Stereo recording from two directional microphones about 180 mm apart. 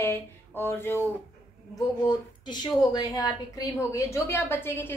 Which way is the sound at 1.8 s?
25° left (ahead or behind).